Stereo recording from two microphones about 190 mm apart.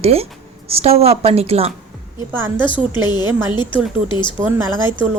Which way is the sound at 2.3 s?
10° right (ahead or behind).